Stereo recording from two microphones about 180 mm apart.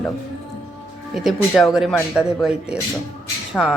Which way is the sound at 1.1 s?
Centre (ahead or behind).